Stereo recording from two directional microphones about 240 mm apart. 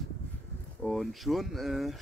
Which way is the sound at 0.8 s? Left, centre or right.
Centre.